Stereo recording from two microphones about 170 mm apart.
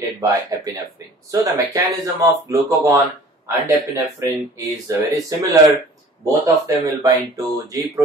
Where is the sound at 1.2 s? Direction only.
20° right (ahead or behind).